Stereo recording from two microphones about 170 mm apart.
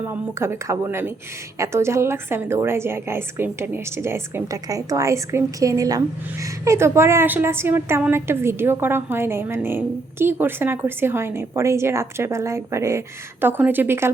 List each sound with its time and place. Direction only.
0.0 s a woman's voice: 15° right (ahead or behind)